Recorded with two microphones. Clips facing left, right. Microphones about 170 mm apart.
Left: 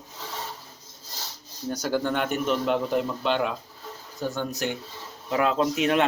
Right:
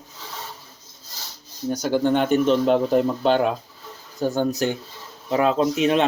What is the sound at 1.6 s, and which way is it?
Speech, 15° right (ahead or behind).